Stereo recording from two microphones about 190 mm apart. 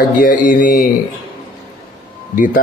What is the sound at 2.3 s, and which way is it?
Speech, 45° left (ahead or behind).